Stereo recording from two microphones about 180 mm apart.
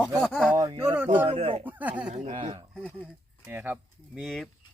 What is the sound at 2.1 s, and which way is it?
Speech, 45° right (ahead or behind).